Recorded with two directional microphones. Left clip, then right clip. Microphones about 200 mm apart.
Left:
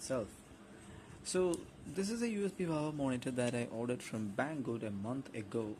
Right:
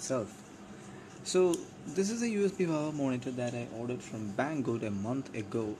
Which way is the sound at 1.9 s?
10° left (ahead or behind).